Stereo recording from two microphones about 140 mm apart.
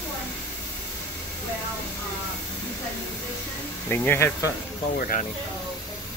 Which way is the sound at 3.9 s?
15° left (ahead or behind).